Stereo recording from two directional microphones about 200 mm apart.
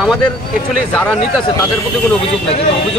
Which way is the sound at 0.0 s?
Centre (ahead or behind).